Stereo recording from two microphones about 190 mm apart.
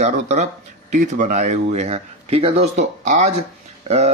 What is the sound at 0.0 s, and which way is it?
Speech, 40° right (ahead or behind).